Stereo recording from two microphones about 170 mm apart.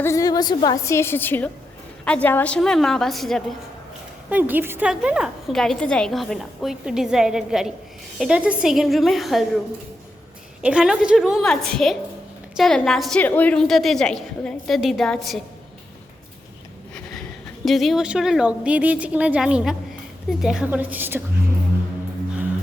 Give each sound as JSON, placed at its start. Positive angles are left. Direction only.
{"t": 0.0, "sound": "a woman's voice", "side_deg": 20}
{"t": 4.3, "sound": "a woman's voice", "side_deg": -10}
{"t": 10.6, "sound": "a woman's voice", "side_deg": -5}
{"t": 17.7, "sound": "a woman's voice", "side_deg": 0}